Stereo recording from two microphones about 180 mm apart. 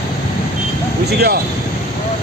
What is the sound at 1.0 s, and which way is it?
Speech, 65° right (ahead or behind).